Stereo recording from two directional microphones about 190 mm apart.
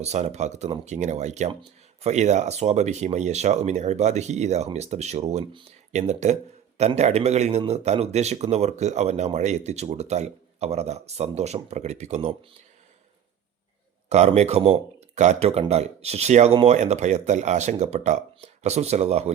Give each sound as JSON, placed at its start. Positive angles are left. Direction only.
{"t": 0.0, "sound": "speech", "side_deg": -35}
{"t": 14.1, "sound": "speech", "side_deg": -35}